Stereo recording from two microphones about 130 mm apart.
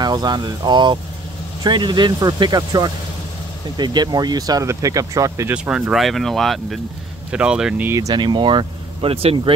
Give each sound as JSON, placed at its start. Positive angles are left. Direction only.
{"t": 0.0, "sound": "speech", "side_deg": -30}
{"t": 5.5, "sound": "speech", "side_deg": -5}
{"t": 8.1, "sound": "speech", "side_deg": -35}